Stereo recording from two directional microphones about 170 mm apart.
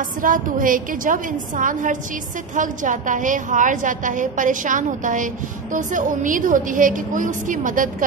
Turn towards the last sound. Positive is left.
turn(degrees=-50)  # may be behind; listen again after turning